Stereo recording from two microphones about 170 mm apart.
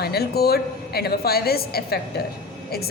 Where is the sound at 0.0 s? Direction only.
70° left (ahead or behind).